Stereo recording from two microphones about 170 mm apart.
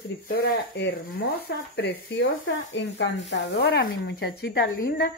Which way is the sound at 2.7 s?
90° left.